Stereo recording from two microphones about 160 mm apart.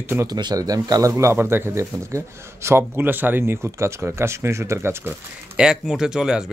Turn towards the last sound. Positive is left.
turn(degrees=-5)  # may be behind; listen again after turning